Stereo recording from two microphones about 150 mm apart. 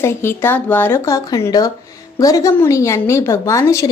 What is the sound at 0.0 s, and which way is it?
A woman's voice, 15° left (ahead or behind).